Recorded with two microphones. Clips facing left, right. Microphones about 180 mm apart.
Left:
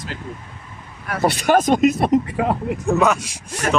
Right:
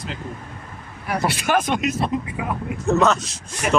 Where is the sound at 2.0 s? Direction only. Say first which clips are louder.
Left 7 dB; 70° left (ahead or behind).